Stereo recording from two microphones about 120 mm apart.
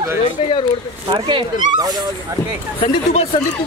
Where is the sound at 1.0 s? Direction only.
40° right (ahead or behind).